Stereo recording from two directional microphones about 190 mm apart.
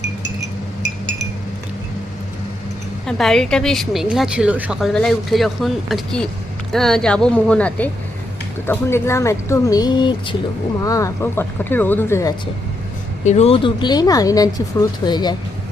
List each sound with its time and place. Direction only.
3.1 s a woman's voice: centre (ahead or behind)
13.2 s speech: 35° left (ahead or behind)